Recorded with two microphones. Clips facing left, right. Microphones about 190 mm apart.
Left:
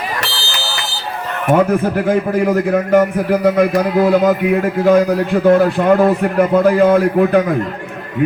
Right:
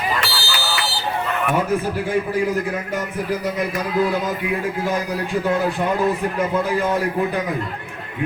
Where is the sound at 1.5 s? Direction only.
65° left (ahead or behind).